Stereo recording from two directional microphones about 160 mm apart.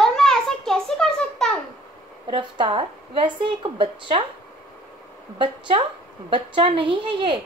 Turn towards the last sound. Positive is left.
turn(degrees=-30)  # may be behind; listen again after turning